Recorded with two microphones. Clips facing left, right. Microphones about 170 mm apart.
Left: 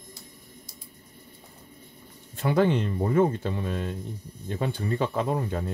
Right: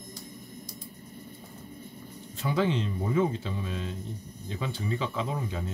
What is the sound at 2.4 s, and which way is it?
Speech, 55° left (ahead or behind).